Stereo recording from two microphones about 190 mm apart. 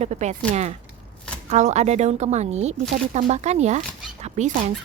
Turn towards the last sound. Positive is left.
turn(degrees=-35)  # may be behind; listen again after turning